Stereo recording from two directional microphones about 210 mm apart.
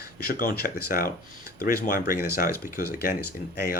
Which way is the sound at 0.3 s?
45° left (ahead or behind).